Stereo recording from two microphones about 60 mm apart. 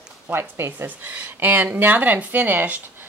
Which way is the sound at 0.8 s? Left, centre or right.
Right.